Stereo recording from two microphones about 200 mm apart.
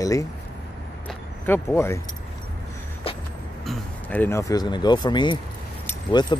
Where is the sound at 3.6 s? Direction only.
10° left (ahead or behind).